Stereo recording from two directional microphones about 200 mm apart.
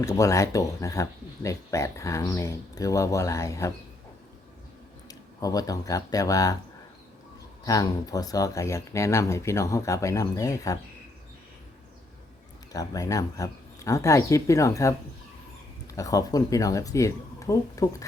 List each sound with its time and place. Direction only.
0.0 s speech: 15° left (ahead or behind)
5.0 s speech: 20° left (ahead or behind)
7.6 s speech: 15° left (ahead or behind)
12.7 s speech: 15° left (ahead or behind)
16.0 s speech: 15° left (ahead or behind)